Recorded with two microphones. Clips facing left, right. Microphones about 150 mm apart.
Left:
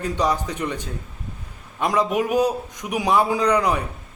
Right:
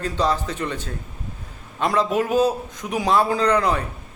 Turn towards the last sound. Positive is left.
turn(degrees=15)  # may be behind; listen again after turning